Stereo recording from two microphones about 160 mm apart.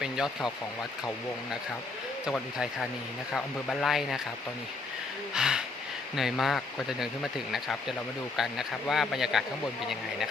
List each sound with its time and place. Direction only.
0.0 s speech: 5° right (ahead or behind)
3.3 s speech: 5° left (ahead or behind)
5.3 s speech: 5° right (ahead or behind)